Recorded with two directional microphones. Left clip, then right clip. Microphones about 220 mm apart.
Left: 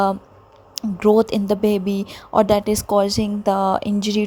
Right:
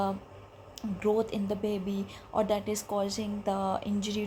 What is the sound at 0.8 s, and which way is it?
A woman's voice, 40° left (ahead or behind).